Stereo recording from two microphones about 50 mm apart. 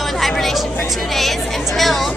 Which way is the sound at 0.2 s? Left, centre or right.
Centre.